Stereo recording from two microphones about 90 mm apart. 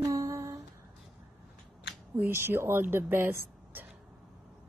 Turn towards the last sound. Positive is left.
turn(degrees=-25)  # may be behind; listen again after turning